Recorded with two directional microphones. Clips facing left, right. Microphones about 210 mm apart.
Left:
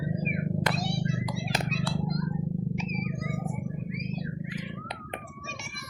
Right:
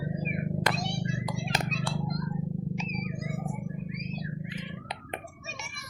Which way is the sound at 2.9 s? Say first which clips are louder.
Left 2 dB; centre (ahead or behind).